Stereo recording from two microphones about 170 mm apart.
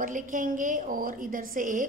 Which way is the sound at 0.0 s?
50° right (ahead or behind).